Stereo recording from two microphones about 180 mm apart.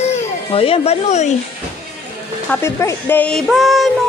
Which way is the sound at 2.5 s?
15° left (ahead or behind).